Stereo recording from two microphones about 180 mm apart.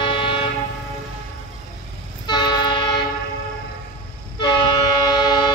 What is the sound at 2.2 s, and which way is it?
Train, 25° left (ahead or behind).